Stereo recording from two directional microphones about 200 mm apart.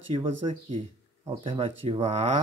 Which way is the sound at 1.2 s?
25° right (ahead or behind).